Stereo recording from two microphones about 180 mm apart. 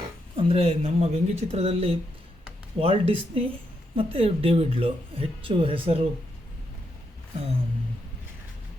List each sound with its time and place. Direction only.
0.3 s speech: 35° right (ahead or behind)